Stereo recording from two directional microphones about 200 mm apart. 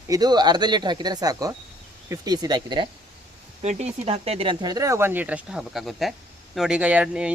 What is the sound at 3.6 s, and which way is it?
A man's voice, 35° right (ahead or behind).